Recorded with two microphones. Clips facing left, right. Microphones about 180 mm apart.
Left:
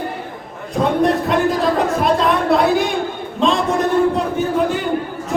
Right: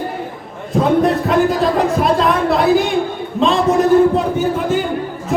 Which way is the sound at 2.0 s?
Centre (ahead or behind).